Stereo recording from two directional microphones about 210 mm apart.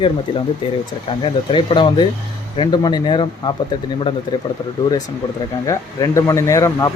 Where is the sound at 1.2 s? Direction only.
25° left (ahead or behind).